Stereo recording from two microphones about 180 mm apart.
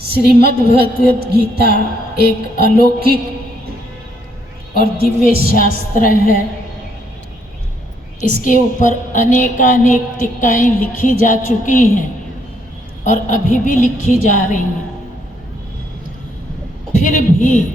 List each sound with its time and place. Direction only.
0.4 s a woman's voice: 60° right (ahead or behind)
4.8 s a woman's voice: 55° left (ahead or behind)
8.2 s a woman's voice: 45° left (ahead or behind)
13.1 s a woman's voice: 45° left (ahead or behind)
17.0 s a woman's voice: 45° left (ahead or behind)